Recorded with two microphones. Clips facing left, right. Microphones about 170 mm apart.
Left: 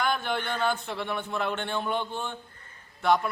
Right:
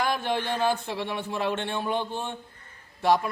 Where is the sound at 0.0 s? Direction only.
25° right (ahead or behind).